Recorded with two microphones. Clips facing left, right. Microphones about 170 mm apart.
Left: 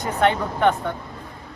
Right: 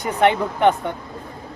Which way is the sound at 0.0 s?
15° right (ahead or behind).